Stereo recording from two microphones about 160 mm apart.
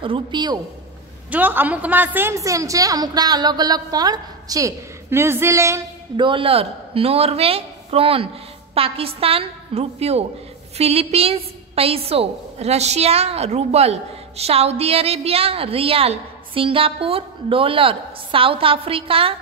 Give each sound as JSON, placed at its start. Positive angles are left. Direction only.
{"t": 0.0, "sound": "a woman's voice", "side_deg": -30}
{"t": 1.3, "sound": "a woman's voice", "side_deg": -10}
{"t": 6.1, "sound": "a woman's voice", "side_deg": -30}